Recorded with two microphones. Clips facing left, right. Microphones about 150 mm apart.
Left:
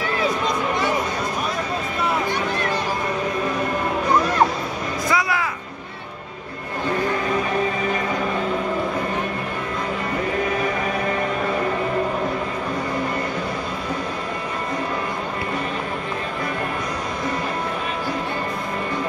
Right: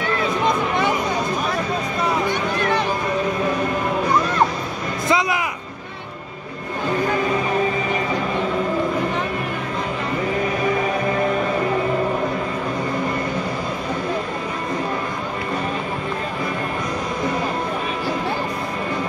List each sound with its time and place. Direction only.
5.0 s music: 20° right (ahead or behind)